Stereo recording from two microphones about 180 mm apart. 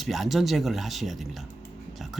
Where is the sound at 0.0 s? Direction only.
Centre (ahead or behind).